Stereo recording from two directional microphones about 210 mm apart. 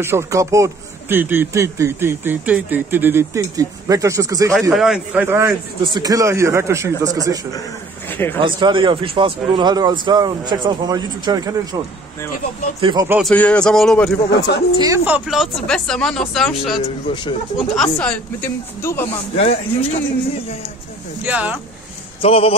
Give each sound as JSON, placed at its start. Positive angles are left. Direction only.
{"t": 0.0, "sound": "speech", "side_deg": -10}
{"t": 4.7, "sound": "speech", "side_deg": 0}
{"t": 8.1, "sound": "a sound", "side_deg": 10}
{"t": 8.4, "sound": "a man's voice", "side_deg": -25}
{"t": 12.8, "sound": "speech", "side_deg": -15}
{"t": 13.2, "sound": "speech", "side_deg": 5}
{"t": 14.3, "sound": "speech", "side_deg": 55}
{"t": 14.8, "sound": "speech", "side_deg": -10}
{"t": 16.7, "sound": "speech", "side_deg": 20}
{"t": 17.7, "sound": "speech", "side_deg": 5}
{"t": 19.3, "sound": "speech", "side_deg": 30}
{"t": 21.2, "sound": "speech", "side_deg": -5}
{"t": 22.2, "sound": "speech", "side_deg": 25}